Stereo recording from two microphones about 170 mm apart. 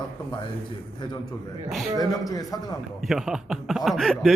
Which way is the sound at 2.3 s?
20° left (ahead or behind).